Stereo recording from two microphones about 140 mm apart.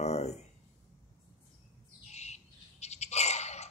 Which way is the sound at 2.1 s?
50° left (ahead or behind).